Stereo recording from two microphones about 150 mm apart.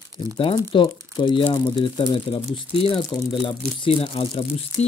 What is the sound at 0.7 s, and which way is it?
Speech, 35° left (ahead or behind).